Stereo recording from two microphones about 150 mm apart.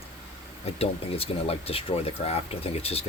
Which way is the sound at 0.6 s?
40° left (ahead or behind).